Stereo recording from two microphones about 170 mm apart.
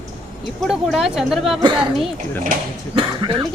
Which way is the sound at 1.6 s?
30° right (ahead or behind).